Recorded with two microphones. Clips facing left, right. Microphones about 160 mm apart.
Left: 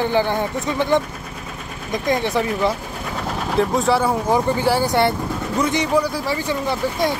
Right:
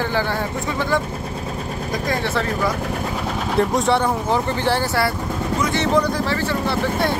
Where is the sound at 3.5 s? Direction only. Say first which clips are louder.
Even; centre (ahead or behind).